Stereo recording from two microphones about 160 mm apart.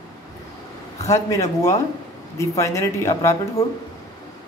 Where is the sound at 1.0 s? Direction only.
20° left (ahead or behind).